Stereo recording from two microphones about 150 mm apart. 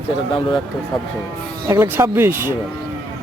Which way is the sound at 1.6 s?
15° right (ahead or behind).